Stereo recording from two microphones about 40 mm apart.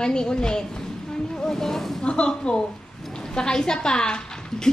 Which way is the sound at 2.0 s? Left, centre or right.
Left.